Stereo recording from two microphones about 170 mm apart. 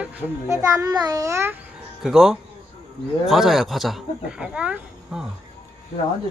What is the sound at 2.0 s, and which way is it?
Speech, centre (ahead or behind).